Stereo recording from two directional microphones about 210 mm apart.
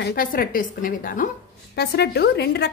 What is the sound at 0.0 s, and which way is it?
A woman's voice, 45° left (ahead or behind).